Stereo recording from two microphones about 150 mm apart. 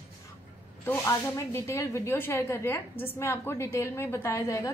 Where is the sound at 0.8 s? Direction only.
15° left (ahead or behind).